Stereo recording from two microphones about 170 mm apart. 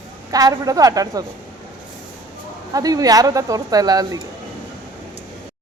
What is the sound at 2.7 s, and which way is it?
Speech, 20° right (ahead or behind).